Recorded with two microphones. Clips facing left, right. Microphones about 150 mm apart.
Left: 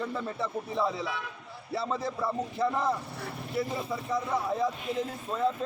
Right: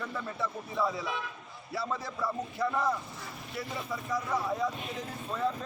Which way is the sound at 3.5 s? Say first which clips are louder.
Left 5 dB; 30° left (ahead or behind).